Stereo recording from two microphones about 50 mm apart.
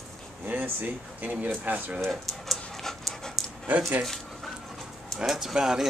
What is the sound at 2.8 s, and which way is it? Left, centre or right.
Pant, centre.